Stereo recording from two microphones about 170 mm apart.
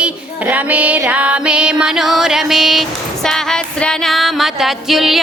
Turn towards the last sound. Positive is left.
turn(degrees=0)  # may be behind; listen again after turning